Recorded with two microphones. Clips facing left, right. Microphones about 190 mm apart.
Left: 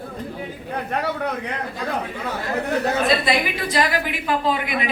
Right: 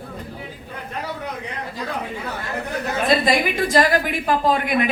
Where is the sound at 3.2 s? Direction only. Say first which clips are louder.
Right 3 dB; 45° right (ahead or behind).